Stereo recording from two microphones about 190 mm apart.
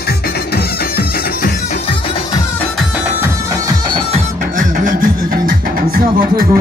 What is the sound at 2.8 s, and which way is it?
Music, 5° right (ahead or behind).